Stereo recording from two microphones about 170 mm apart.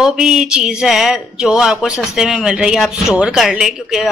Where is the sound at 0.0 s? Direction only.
5° right (ahead or behind).